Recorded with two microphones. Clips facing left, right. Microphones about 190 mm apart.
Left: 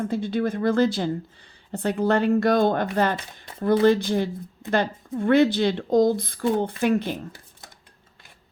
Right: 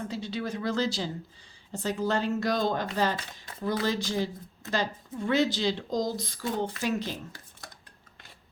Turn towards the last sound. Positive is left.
turn(degrees=60)  # may be behind; listen again after turning